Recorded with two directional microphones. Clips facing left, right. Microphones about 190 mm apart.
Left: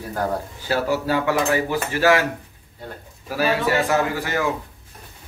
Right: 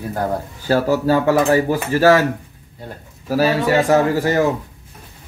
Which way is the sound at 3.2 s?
40° right (ahead or behind).